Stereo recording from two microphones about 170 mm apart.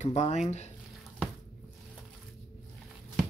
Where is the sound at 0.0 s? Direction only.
40° left (ahead or behind).